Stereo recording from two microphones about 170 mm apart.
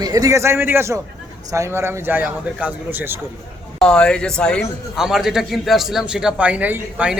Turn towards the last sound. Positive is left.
turn(degrees=-10)  # may be behind; listen again after turning